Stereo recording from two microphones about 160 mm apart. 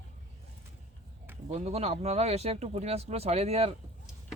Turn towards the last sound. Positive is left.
turn(degrees=-40)  # may be behind; listen again after turning